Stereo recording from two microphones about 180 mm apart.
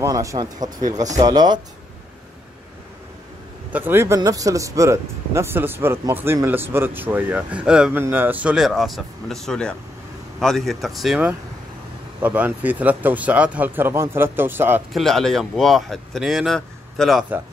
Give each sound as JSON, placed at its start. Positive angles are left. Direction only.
{"t": 0.0, "sound": "speech", "side_deg": -20}
{"t": 3.7, "sound": "speech", "side_deg": -10}
{"t": 14.9, "sound": "speech", "side_deg": 0}